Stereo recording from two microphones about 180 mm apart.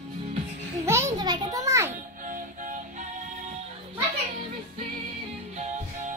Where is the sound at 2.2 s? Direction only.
45° right (ahead or behind).